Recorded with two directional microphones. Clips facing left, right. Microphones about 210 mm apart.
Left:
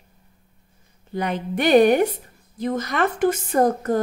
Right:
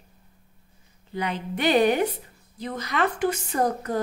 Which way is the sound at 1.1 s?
50° left (ahead or behind).